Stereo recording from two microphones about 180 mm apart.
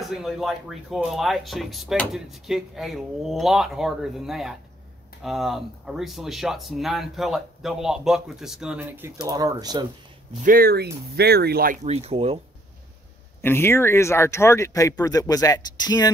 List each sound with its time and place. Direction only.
0.1 s speech: centre (ahead or behind); by 9.8 s 20° right (ahead or behind)
10.4 s speech: 55° right (ahead or behind)
11.8 s speech: 35° right (ahead or behind)
13.4 s speech: 15° left (ahead or behind)